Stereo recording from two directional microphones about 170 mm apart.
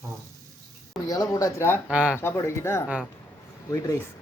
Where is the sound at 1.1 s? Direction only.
20° left (ahead or behind).